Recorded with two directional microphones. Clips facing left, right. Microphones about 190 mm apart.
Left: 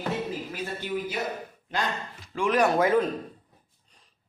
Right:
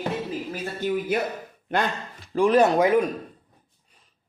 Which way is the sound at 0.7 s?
45° right (ahead or behind).